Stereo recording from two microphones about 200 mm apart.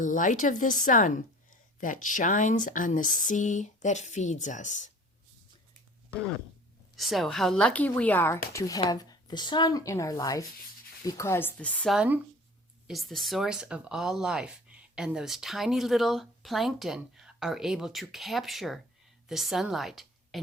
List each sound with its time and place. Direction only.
0.0 s a woman's voice: 40° left (ahead or behind)
6.9 s speech: centre (ahead or behind)
11.9 s a woman's voice: 10° right (ahead or behind)